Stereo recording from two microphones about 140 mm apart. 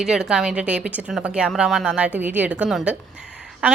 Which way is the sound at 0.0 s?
5° right (ahead or behind).